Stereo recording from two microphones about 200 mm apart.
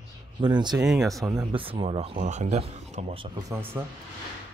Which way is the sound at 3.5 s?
10° right (ahead or behind).